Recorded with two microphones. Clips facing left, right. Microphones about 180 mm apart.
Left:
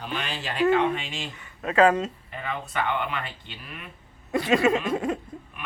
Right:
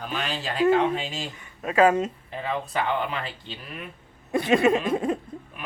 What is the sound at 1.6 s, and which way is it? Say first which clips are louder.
Speech: even; 15° right (ahead or behind).